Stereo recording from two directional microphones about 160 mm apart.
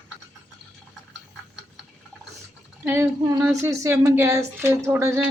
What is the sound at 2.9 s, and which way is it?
Speech, 15° right (ahead or behind).